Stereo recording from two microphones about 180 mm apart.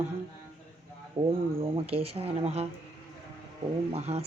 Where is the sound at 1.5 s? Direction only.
30° right (ahead or behind).